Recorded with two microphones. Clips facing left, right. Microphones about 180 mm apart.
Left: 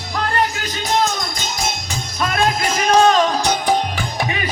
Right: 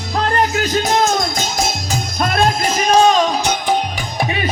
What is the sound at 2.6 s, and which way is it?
Music, 25° right (ahead or behind).